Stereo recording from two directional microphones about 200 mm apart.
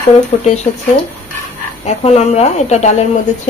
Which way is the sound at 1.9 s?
30° left (ahead or behind).